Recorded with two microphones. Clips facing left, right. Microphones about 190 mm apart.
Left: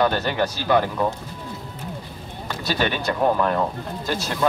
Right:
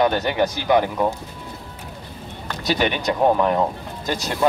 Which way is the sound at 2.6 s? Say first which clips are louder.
Right 3 dB; 20° right (ahead or behind).